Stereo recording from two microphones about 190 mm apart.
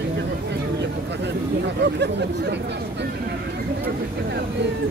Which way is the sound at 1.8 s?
65° right (ahead or behind).